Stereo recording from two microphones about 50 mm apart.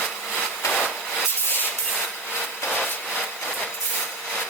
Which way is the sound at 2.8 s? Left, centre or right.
Centre.